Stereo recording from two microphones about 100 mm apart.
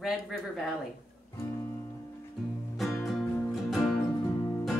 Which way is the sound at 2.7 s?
Centre (ahead or behind).